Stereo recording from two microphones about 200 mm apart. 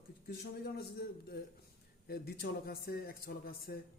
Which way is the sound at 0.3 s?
55° left (ahead or behind).